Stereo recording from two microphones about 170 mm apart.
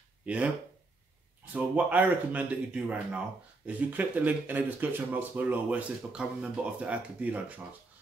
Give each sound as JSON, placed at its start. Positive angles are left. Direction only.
{"t": 0.2, "sound": "speech", "side_deg": -10}
{"t": 1.5, "sound": "speech", "side_deg": -10}